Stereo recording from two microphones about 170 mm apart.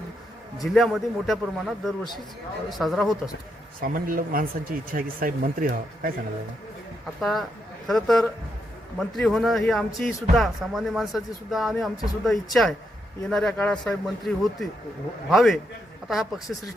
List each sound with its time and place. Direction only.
0.6 s speech: centre (ahead or behind)
3.8 s speech: 55° right (ahead or behind)
7.2 s speech: centre (ahead or behind)